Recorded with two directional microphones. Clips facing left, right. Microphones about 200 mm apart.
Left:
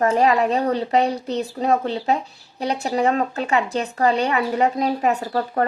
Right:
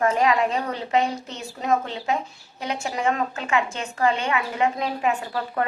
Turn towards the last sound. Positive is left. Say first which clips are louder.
# left 4 dB
turn(degrees=40)  # may be behind; listen again after turning